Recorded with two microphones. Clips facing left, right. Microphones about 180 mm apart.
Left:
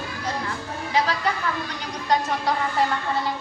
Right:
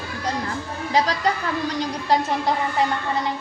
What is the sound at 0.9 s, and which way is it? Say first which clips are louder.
Speech: right 2 dB; 40° right (ahead or behind).